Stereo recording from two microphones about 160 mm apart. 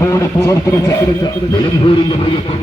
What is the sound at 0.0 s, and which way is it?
Speech, 20° left (ahead or behind).